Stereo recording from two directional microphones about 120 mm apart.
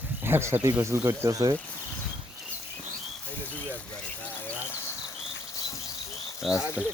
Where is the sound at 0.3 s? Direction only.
20° right (ahead or behind).